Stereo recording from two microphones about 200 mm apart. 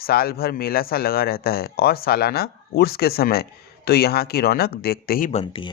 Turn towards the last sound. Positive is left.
turn(degrees=30)  # may be behind; listen again after turning